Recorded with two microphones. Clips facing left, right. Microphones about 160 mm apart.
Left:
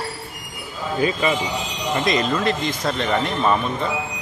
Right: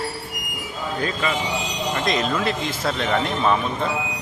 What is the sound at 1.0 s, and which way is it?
Speech, 10° left (ahead or behind).